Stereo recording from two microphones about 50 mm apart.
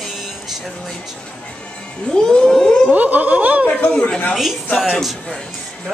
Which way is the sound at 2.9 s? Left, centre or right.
Right.